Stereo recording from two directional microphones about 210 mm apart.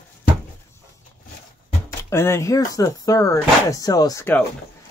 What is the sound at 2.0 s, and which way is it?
Speech, 10° left (ahead or behind).